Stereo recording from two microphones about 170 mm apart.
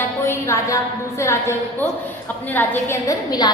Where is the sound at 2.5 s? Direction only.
15° left (ahead or behind).